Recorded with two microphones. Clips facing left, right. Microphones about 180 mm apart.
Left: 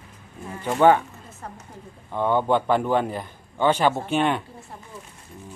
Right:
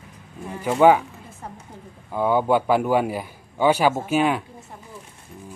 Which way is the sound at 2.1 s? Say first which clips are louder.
Right 2 dB; 5° right (ahead or behind).